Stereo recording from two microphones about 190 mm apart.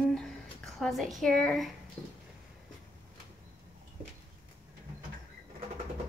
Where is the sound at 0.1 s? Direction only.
Centre (ahead or behind).